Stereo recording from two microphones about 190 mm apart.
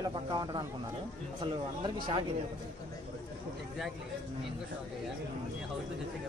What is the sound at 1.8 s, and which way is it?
Speech, 25° right (ahead or behind).